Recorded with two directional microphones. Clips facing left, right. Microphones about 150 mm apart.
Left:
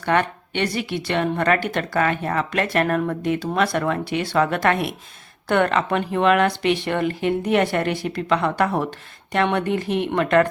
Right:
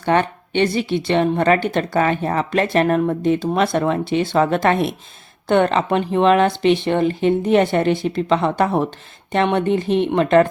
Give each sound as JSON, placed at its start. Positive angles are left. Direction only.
{"t": 0.0, "sound": "a woman's voice", "side_deg": -30}